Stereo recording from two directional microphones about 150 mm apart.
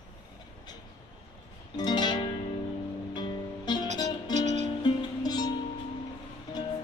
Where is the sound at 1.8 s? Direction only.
30° left (ahead or behind).